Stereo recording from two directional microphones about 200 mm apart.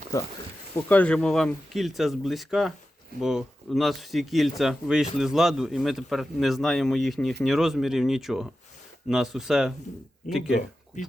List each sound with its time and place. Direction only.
0.1 s a man's voice: 15° left (ahead or behind); by 10.6 s centre (ahead or behind)